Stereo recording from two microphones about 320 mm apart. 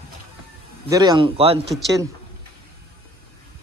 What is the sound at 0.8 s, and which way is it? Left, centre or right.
Speech, centre.